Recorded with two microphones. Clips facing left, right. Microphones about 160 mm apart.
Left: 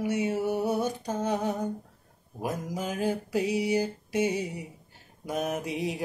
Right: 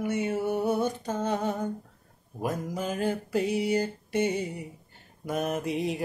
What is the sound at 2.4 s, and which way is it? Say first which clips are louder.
Mantra: right 1 dB; 5° left (ahead or behind).